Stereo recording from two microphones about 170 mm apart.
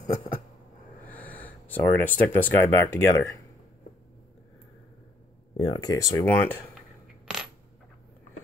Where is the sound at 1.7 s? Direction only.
10° left (ahead or behind).